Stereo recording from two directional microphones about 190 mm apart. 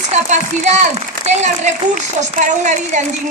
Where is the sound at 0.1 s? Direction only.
35° right (ahead or behind).